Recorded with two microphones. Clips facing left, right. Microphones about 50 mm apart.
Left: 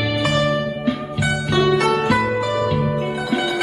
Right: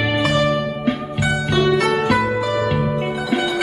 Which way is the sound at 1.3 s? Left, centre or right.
Centre.